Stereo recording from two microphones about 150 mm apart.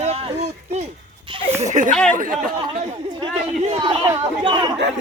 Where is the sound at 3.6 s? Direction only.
40° right (ahead or behind).